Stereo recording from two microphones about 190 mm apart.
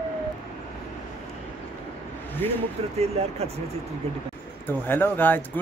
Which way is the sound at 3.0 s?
35° right (ahead or behind).